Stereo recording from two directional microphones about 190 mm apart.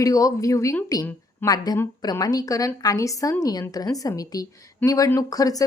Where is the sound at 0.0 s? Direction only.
15° left (ahead or behind).